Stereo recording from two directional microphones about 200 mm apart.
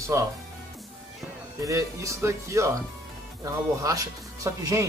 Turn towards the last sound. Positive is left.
turn(degrees=-15)  # may be behind; listen again after turning